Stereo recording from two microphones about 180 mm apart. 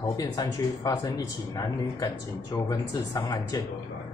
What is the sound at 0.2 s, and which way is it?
Speech, 25° left (ahead or behind).